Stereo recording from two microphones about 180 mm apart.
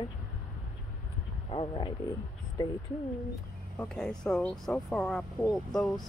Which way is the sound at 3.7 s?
5° left (ahead or behind).